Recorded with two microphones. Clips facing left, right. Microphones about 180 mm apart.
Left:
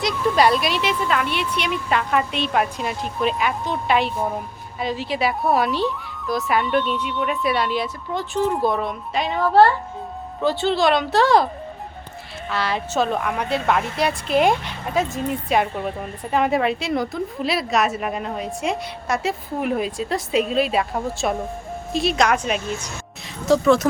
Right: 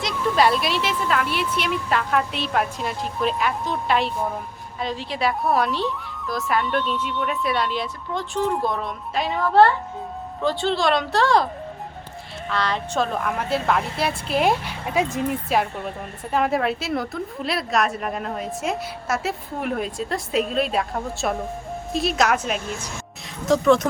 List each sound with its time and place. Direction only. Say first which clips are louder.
0.0 s a woman's voice: left 2 dB; centre (ahead or behind)
12.5 s a woman's voice: left 1 dB; 5° left (ahead or behind); by 15.2 s 10° right (ahead or behind)
15.4 s a woman's voice: left 2 dB; centre (ahead or behind)